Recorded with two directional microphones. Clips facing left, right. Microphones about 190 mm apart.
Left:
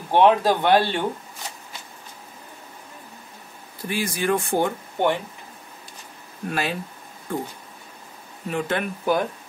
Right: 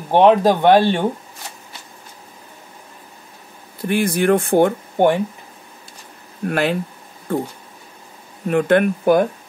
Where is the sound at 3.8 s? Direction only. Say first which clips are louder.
Right 8 dB; 60° right (ahead or behind).